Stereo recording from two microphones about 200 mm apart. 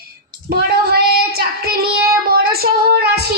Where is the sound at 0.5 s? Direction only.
50° right (ahead or behind).